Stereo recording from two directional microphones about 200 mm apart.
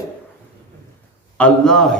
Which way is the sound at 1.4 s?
5° left (ahead or behind).